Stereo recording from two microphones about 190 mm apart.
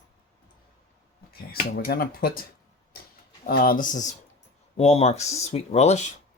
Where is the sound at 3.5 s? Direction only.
50° left (ahead or behind).